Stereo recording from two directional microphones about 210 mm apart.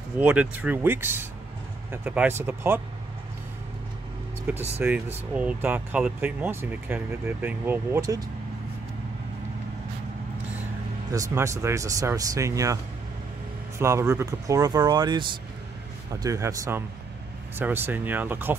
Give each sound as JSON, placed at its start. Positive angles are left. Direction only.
{"t": 0.2, "sound": "speech", "side_deg": -5}
{"t": 4.7, "sound": "speech", "side_deg": -10}
{"t": 11.1, "sound": "speech", "side_deg": -15}
{"t": 13.7, "sound": "speech", "side_deg": -15}